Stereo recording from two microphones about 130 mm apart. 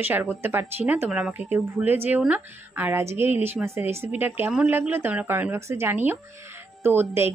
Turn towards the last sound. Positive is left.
turn(degrees=-20)  # may be behind; listen again after turning